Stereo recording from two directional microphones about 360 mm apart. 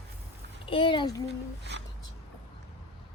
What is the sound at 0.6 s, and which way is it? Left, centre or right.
Speech, centre.